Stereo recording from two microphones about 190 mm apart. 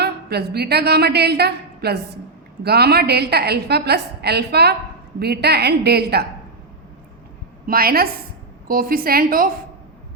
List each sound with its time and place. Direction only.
0.0 s a woman's voice: 60° right (ahead or behind)
7.7 s a woman's voice: 50° right (ahead or behind)